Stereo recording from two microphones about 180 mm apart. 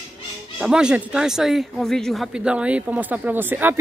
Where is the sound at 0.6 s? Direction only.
5° right (ahead or behind).